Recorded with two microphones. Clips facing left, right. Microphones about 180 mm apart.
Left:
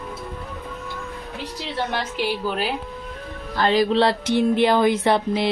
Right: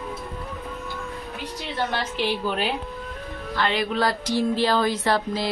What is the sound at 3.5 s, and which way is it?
Speech, 40° left (ahead or behind).